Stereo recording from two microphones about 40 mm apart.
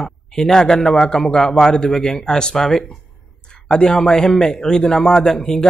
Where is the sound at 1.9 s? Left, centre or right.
Centre.